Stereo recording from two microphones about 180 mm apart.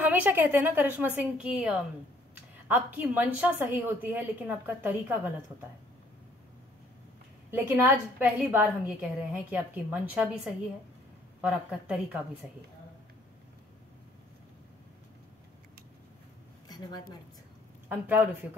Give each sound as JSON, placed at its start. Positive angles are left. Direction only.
{"t": 0.0, "sound": "a woman's voice", "side_deg": -10}
{"t": 7.5, "sound": "a woman's voice", "side_deg": -10}
{"t": 16.6, "sound": "a sound", "side_deg": 20}
{"t": 17.8, "sound": "a woman's voice", "side_deg": -10}